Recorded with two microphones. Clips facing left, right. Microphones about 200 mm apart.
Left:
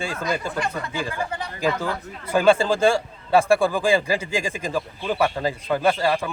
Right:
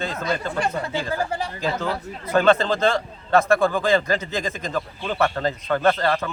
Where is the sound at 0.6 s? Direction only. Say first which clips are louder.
Right 2 dB; 30° right (ahead or behind).